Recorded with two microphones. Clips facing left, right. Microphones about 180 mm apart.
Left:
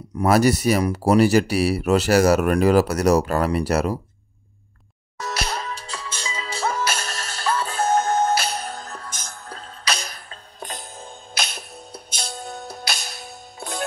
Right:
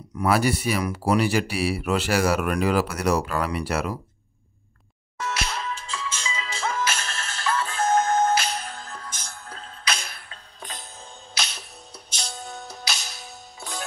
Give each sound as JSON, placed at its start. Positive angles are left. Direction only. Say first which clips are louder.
{"t": 0.2, "sound": "speech", "louder": "left 5 dB", "side_deg": 40}
{"t": 5.2, "sound": "music", "louder": "left 2 dB", "side_deg": 40}